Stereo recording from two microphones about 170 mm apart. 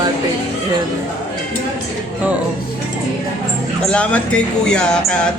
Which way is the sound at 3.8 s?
5° left (ahead or behind).